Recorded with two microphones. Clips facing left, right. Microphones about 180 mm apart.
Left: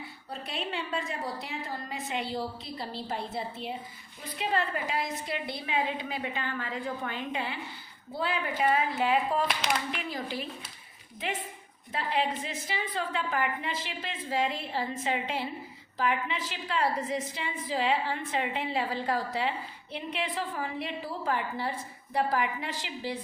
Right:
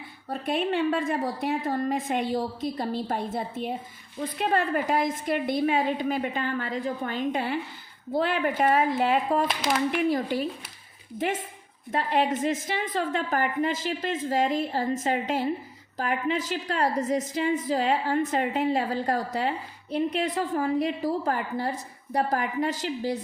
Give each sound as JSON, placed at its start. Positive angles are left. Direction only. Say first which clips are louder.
{"t": 0.3, "sound": "a woman's voice", "louder": "right 10 dB", "side_deg": -50}